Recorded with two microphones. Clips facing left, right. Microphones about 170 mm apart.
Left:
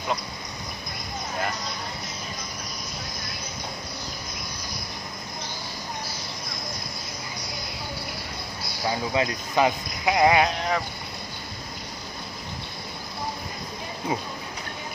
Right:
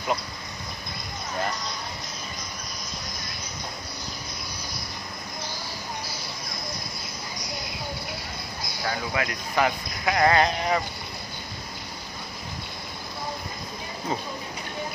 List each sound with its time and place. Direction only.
8.8 s speech: 25° left (ahead or behind)
10.4 s speech: centre (ahead or behind)